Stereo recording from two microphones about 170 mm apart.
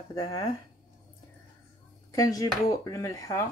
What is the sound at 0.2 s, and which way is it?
Speech, 20° left (ahead or behind).